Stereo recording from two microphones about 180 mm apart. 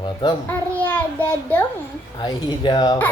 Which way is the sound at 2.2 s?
25° left (ahead or behind).